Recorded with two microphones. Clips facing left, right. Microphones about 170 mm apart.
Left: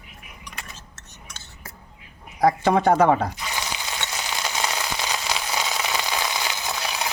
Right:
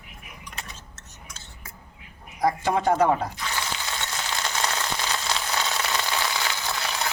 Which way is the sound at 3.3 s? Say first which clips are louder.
Even; 15° left (ahead or behind).